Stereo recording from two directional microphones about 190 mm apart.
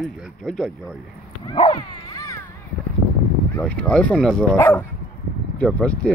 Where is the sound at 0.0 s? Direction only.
Centre (ahead or behind).